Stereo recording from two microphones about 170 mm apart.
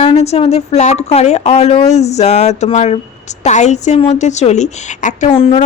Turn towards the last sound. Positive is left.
turn(degrees=35)  # may be behind; listen again after turning